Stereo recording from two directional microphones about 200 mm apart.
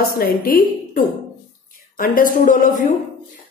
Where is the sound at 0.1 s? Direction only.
50° left (ahead or behind).